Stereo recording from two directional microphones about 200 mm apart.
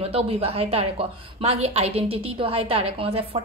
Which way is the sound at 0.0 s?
30° right (ahead or behind).